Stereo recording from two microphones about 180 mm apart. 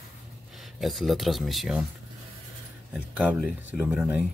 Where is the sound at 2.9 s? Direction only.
10° right (ahead or behind).